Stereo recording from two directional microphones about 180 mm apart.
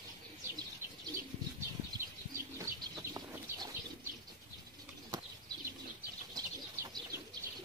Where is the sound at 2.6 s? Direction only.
15° right (ahead or behind).